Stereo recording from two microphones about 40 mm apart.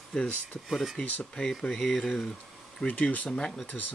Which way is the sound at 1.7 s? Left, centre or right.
Centre.